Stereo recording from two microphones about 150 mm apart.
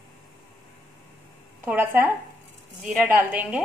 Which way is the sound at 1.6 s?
15° right (ahead or behind).